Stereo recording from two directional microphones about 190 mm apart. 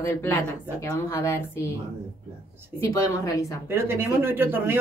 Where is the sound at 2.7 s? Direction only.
15° left (ahead or behind).